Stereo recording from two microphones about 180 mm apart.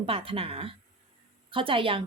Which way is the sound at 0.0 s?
30° right (ahead or behind).